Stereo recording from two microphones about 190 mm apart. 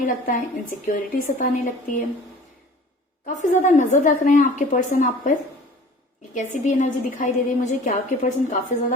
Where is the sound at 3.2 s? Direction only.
40° left (ahead or behind).